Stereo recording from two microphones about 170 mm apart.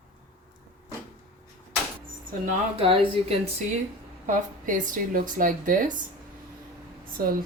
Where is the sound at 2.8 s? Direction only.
35° right (ahead or behind).